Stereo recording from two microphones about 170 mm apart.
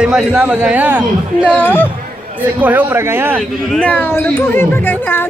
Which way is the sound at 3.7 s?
10° left (ahead or behind).